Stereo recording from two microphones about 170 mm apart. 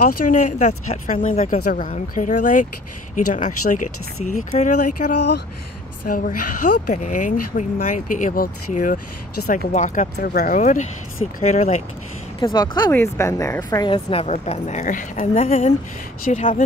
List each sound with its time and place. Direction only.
0.0 s speech: 50° left (ahead or behind)
6.0 s speech: 55° left (ahead or behind)
10.2 s a woman's voice: 60° left (ahead or behind); by 11.8 s 40° left (ahead or behind)
12.4 s a woman's voice: 25° left (ahead or behind); by 16.6 s 45° left (ahead or behind)